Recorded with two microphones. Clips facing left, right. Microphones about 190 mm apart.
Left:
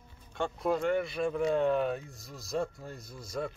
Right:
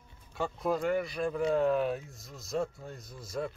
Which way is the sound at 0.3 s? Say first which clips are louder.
Left 1 dB; centre (ahead or behind).